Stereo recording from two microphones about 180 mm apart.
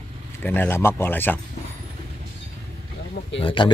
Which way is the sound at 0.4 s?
10° left (ahead or behind).